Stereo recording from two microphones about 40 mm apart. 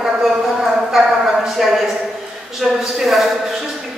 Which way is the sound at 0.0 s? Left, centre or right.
Centre.